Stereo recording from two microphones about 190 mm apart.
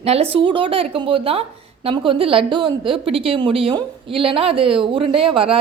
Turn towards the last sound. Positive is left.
turn(degrees=-30)  # may be behind; listen again after turning